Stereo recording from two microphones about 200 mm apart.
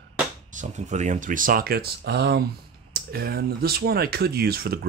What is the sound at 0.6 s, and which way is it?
Speech, 35° right (ahead or behind).